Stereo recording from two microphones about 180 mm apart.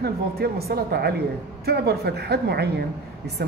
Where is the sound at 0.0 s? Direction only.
60° right (ahead or behind).